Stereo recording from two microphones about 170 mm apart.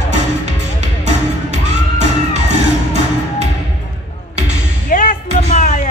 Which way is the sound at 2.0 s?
45° right (ahead or behind).